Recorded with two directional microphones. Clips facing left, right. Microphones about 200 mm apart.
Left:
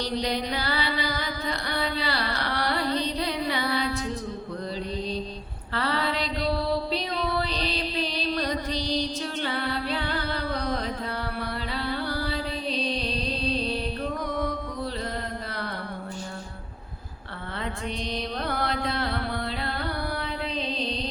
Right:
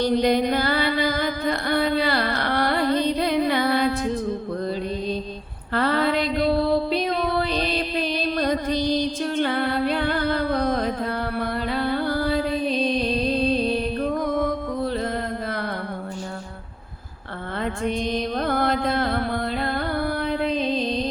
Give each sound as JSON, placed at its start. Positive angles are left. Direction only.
{"t": 0.0, "sound": "music", "side_deg": -50}
{"t": 5.7, "sound": "music", "side_deg": -50}
{"t": 17.6, "sound": "music", "side_deg": -50}